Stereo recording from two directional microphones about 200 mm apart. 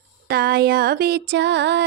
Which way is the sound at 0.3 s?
50° right (ahead or behind).